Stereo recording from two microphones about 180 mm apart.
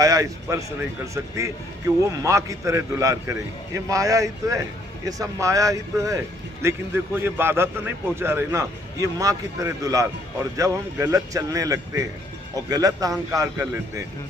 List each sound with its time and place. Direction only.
0.0 s a man's voice: 20° right (ahead or behind)